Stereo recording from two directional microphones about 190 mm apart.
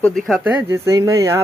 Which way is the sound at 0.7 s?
15° right (ahead or behind).